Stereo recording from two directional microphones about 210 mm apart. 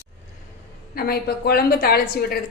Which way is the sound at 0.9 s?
45° left (ahead or behind).